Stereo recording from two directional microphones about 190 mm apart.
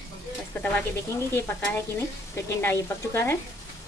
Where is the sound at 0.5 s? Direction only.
10° left (ahead or behind).